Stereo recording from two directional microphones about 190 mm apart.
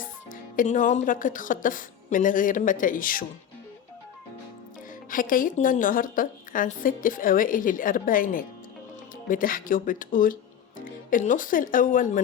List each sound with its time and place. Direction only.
0.3 s a woman's voice: 45° left (ahead or behind)
5.1 s a woman's voice: 45° left (ahead or behind)